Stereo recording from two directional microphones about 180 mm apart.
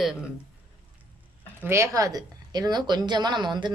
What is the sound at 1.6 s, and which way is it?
Speech, 15° right (ahead or behind).